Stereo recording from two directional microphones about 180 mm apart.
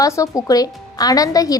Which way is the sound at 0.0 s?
20° left (ahead or behind).